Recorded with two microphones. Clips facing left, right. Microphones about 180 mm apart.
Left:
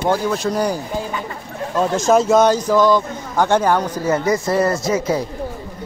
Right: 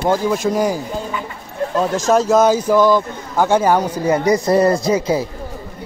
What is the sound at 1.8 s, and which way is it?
A man's voice, centre (ahead or behind).